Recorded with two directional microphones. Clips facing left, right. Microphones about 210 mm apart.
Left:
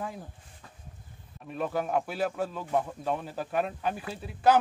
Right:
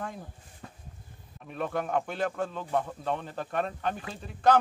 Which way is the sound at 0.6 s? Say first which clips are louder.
Right 7 dB; 45° right (ahead or behind).